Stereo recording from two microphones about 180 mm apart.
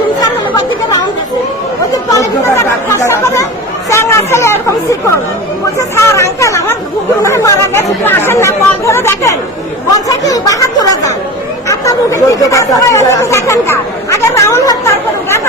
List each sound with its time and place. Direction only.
2.1 s chatter: 15° left (ahead or behind)